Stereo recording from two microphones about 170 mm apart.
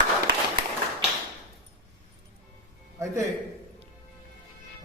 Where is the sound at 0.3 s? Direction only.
75° right (ahead or behind).